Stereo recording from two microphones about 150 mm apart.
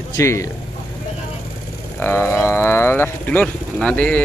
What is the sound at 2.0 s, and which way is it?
Speech, 15° left (ahead or behind).